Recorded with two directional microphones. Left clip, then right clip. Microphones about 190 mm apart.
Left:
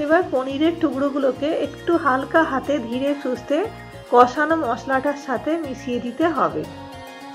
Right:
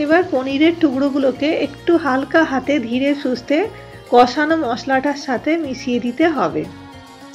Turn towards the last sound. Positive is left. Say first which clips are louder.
# right 3 dB
turn(degrees=-30)  # may be behind; listen again after turning